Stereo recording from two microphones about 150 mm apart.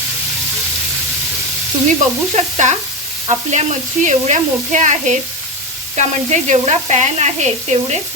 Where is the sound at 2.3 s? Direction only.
50° right (ahead or behind).